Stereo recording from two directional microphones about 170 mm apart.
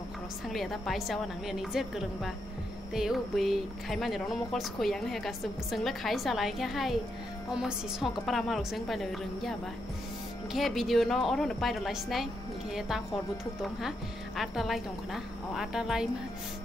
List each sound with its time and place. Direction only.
0.5 s speech: centre (ahead or behind)
10.5 s speech: centre (ahead or behind)